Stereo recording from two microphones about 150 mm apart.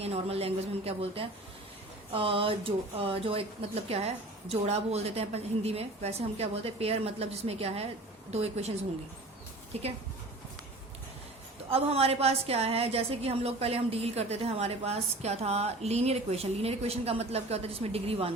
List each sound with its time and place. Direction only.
0.0 s a woman's voice: 40° right (ahead or behind)
11.7 s a woman's voice: 40° right (ahead or behind)